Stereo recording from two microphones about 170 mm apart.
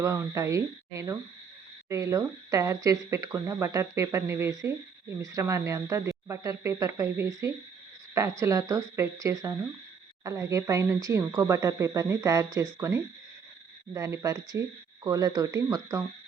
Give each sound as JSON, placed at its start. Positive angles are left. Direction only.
{"t": 0.0, "sound": "a woman's voice", "side_deg": -15}